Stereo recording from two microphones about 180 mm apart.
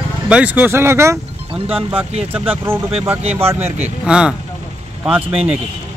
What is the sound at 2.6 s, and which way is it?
Speech, 15° right (ahead or behind).